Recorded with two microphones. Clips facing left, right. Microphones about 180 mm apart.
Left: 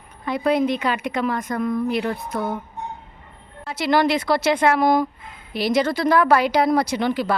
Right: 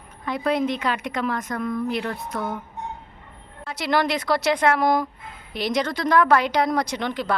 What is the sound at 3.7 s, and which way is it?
Speech, centre (ahead or behind).